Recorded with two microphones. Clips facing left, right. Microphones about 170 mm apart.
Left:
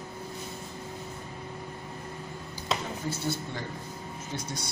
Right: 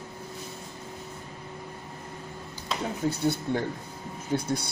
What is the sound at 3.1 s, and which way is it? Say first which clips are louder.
Speech: right 6 dB; 55° right (ahead or behind).